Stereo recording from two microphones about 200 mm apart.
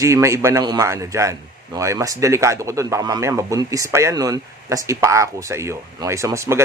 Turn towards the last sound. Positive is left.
turn(degrees=-15)  # may be behind; listen again after turning